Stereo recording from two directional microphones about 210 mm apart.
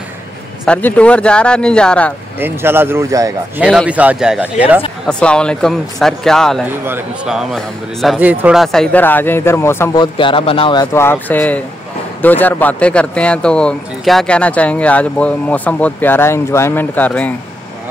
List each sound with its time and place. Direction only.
0.7 s speech: 5° left (ahead or behind)
2.4 s speech: 10° right (ahead or behind)
3.6 s speech: 5° right (ahead or behind)
5.0 s speech: 5° left (ahead or behind)
10.1 s speech: 25° left (ahead or behind); by 17.3 s 5° left (ahead or behind)